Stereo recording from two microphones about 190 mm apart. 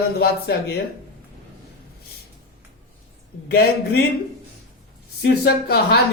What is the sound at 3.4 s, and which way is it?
Speech, 55° left (ahead or behind).